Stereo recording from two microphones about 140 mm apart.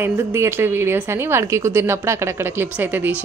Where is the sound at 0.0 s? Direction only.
20° right (ahead or behind).